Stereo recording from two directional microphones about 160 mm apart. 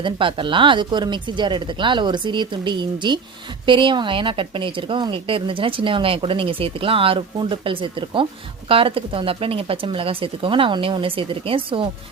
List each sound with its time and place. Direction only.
0.0 s speech: 30° right (ahead or behind)